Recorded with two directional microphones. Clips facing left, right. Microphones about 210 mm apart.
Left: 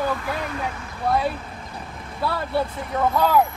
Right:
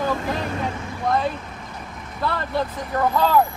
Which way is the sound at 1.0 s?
10° left (ahead or behind).